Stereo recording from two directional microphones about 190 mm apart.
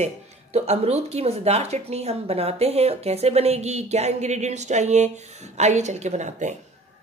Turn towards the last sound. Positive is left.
turn(degrees=-40)  # may be behind; listen again after turning